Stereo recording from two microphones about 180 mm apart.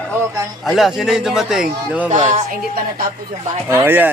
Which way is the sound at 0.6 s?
Centre (ahead or behind).